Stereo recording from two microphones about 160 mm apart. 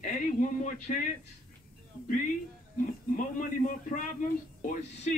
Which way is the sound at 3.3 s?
55° left (ahead or behind).